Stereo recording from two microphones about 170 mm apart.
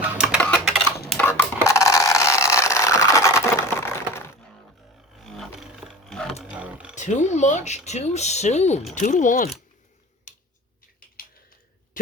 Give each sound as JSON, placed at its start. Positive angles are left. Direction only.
{"t": 0.0, "sound": "typing", "side_deg": -10}
{"t": 0.4, "sound": "typing", "side_deg": 5}
{"t": 1.1, "sound": "a sound", "side_deg": 10}
{"t": 5.1, "sound": "music", "side_deg": 0}
{"t": 6.4, "sound": "a sound", "side_deg": -5}
{"t": 6.9, "sound": "speech", "side_deg": 45}